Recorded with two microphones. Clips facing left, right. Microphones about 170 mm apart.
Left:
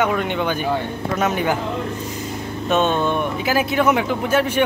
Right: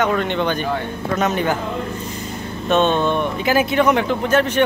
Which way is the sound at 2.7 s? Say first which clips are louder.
Right 2 dB; 10° left (ahead or behind).